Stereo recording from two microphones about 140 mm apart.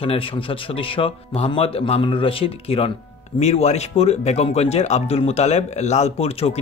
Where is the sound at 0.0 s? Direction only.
40° left (ahead or behind).